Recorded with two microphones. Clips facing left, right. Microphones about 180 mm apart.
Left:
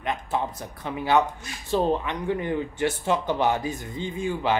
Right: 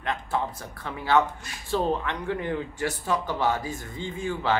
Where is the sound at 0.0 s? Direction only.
20° left (ahead or behind).